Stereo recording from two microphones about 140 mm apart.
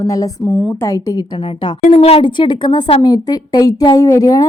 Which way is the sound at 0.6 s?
10° left (ahead or behind).